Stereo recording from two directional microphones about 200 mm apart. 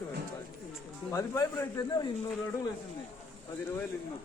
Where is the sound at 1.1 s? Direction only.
15° left (ahead or behind).